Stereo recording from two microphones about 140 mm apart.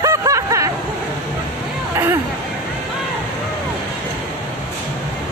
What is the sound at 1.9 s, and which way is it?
Hubbub, 20° right (ahead or behind).